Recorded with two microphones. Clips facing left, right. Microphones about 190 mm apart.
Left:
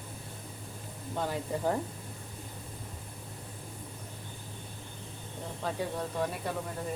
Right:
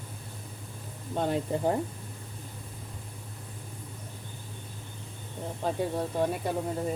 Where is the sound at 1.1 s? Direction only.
25° right (ahead or behind).